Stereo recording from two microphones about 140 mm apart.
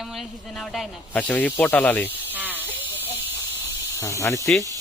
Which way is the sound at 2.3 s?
15° right (ahead or behind).